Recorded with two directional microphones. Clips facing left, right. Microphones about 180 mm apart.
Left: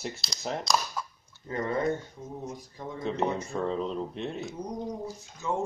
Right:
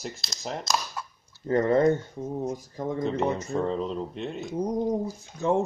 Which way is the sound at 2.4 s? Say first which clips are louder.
Right 7 dB; 40° right (ahead or behind).